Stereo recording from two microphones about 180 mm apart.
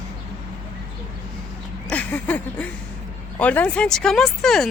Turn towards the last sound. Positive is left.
turn(degrees=0)  # may be behind; listen again after turning